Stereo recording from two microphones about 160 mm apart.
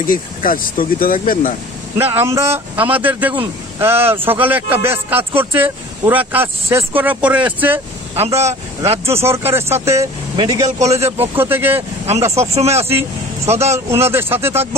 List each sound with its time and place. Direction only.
0.0 s speech: 60° left (ahead or behind)
2.0 s a man's voice: 15° right (ahead or behind)
8.2 s speech: 40° right (ahead or behind)
9.0 s a man's voice: 15° right (ahead or behind)
10.8 s speech: 40° right (ahead or behind)
11.1 s a man's voice: 15° right (ahead or behind)
12.1 s speech: 40° right (ahead or behind)
13.6 s a man's voice: 15° right (ahead or behind)